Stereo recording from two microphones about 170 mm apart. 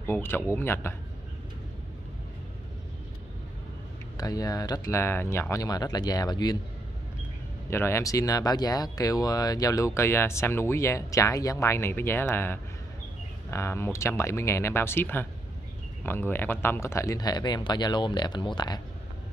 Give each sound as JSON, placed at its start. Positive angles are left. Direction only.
{"t": 0.0, "sound": "speech", "side_deg": 10}
{"t": 4.2, "sound": "speech", "side_deg": 20}
{"t": 7.7, "sound": "speech", "side_deg": 15}